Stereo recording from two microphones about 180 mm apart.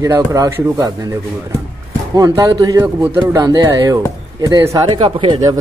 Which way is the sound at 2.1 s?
20° right (ahead or behind).